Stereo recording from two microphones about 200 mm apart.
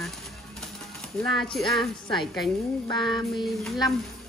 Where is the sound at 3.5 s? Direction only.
Centre (ahead or behind).